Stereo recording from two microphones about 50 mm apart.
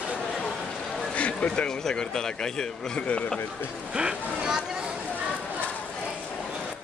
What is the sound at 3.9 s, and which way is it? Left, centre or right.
Speech, centre.